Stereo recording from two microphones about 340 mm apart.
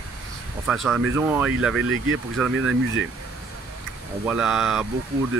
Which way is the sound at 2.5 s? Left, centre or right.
Right.